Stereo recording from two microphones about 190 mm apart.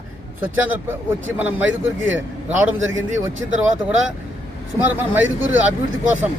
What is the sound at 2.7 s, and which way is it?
Speech, 90° right.